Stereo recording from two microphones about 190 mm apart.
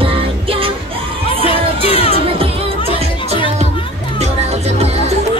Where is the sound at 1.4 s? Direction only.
30° left (ahead or behind).